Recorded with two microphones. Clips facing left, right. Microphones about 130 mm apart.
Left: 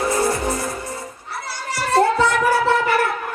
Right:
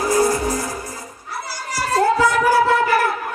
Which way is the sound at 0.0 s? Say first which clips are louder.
Right 2 dB; 25° left (ahead or behind).